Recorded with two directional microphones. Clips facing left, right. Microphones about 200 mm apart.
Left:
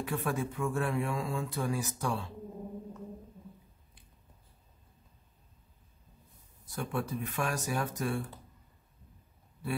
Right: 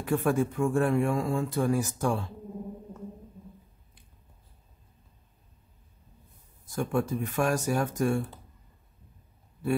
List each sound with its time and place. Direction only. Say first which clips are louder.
0.0 s speech: right 7 dB; 45° right (ahead or behind)
6.7 s speech: right 6 dB; 45° right (ahead or behind)